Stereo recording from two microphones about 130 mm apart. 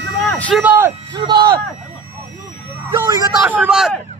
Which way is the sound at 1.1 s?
35° right (ahead or behind).